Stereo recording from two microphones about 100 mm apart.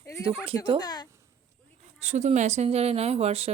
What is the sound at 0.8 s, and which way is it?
Speech, 40° left (ahead or behind).